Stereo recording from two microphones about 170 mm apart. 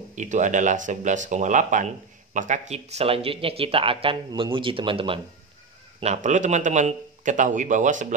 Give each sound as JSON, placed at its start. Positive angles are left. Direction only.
{"t": 0.1, "sound": "speech", "side_deg": -45}
{"t": 5.9, "sound": "a man's voice", "side_deg": -40}